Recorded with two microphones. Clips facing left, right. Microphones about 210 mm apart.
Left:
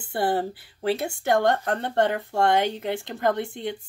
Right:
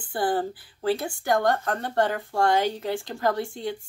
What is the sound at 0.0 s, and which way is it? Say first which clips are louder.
A woman's voice: left 1 dB; 25° left (ahead or behind).